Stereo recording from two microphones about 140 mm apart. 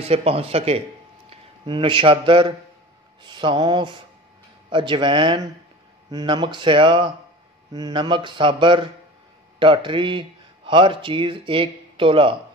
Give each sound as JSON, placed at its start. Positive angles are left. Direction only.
{"t": 0.0, "sound": "speech", "side_deg": -45}